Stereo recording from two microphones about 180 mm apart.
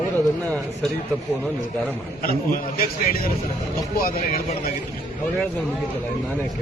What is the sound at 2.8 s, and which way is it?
A man's voice, 55° left (ahead or behind).